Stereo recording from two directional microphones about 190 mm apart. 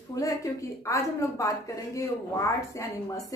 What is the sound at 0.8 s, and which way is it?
A woman's voice, 15° left (ahead or behind).